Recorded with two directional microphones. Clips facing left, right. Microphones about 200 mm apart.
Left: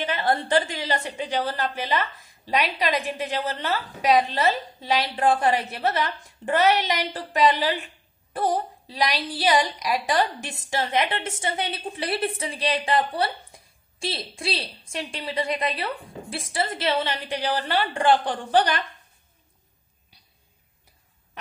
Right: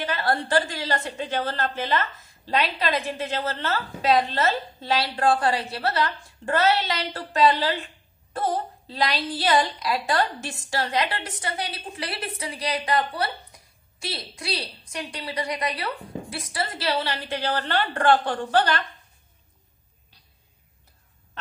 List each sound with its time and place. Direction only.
0.1 s a woman's voice: 20° left (ahead or behind)
17.4 s a woman's voice: 10° left (ahead or behind)